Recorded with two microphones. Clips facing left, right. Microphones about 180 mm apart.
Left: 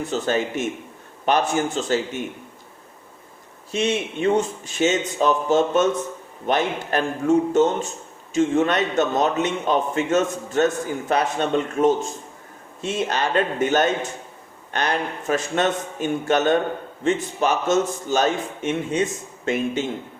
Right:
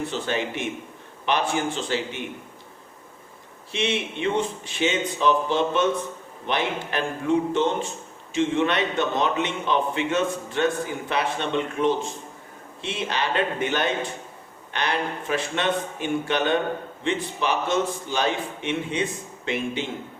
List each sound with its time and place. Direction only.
0.1 s a man's voice: 40° left (ahead or behind)
3.7 s a man's voice: 40° left (ahead or behind)